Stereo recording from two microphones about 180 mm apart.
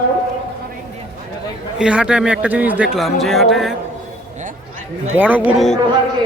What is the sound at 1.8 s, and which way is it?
Speech, 5° right (ahead or behind).